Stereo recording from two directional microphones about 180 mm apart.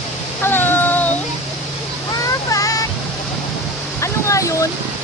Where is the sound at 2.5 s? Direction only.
20° left (ahead or behind).